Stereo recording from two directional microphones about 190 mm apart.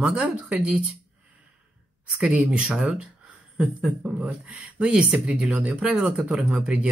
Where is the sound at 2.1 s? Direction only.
Centre (ahead or behind).